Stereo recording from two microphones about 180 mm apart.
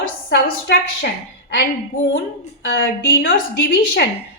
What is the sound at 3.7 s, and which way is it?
Speech, 75° left (ahead or behind).